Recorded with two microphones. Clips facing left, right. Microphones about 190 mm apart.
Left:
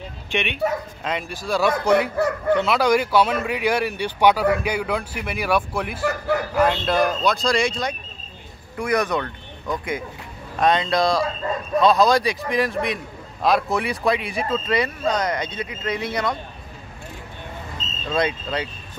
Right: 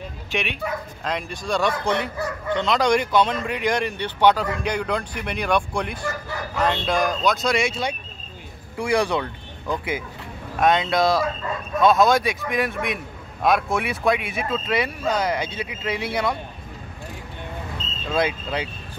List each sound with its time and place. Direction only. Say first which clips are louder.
0.3 s a man's voice: left 4 dB; centre (ahead or behind)
6.0 s speech: left 8 dB; 65° left (ahead or behind)
6.6 s a man's voice: left 1 dB; 5° left (ahead or behind)
17.8 s vehicle: right 1 dB; 65° right (ahead or behind)
18.1 s speech: even; 10° right (ahead or behind)